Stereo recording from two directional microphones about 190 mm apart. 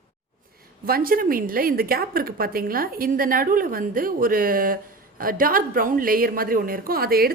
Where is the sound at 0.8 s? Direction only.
50° right (ahead or behind).